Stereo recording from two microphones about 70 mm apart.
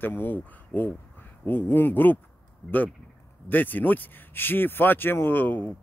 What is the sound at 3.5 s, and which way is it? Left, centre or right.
Speech, left.